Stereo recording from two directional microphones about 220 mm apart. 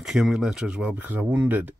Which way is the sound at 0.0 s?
Centre (ahead or behind).